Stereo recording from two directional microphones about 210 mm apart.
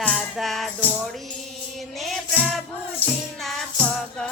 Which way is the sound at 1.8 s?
Centre (ahead or behind).